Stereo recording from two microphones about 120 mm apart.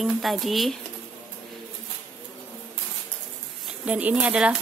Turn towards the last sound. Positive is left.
turn(degrees=-10)  # may be behind; listen again after turning